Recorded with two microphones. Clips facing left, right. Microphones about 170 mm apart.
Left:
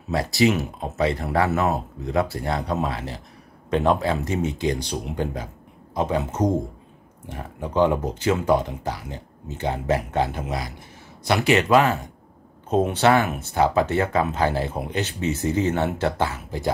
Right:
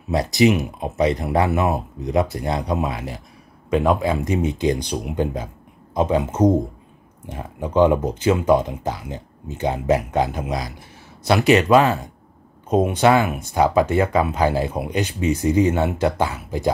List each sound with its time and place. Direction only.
0.1 s speech: 20° right (ahead or behind)